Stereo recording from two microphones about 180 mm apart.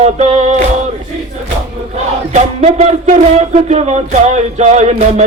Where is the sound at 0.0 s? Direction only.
35° right (ahead or behind).